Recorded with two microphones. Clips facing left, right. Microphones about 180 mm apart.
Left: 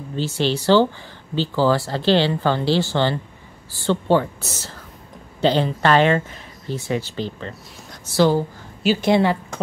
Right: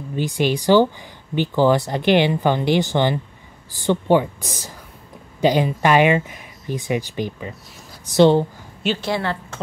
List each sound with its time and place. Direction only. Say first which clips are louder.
0.1 s speech: right 1 dB; 15° right (ahead or behind)
9.0 s a woman's voice: left 6 dB; 15° left (ahead or behind)